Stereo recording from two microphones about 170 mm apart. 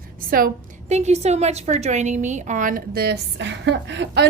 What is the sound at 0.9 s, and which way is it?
A woman's voice, 40° right (ahead or behind).